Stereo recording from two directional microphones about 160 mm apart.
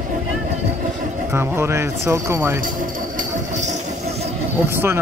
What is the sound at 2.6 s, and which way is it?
Vehicle, 55° right (ahead or behind).